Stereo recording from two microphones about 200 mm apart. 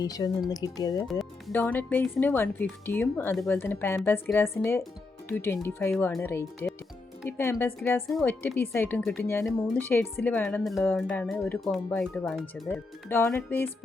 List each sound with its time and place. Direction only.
0.0 s speech: 20° left (ahead or behind)
1.2 s speech: 5° left (ahead or behind)
13.1 s speech: 10° left (ahead or behind)